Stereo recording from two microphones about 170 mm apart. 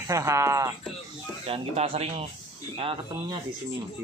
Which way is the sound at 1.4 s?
35° right (ahead or behind).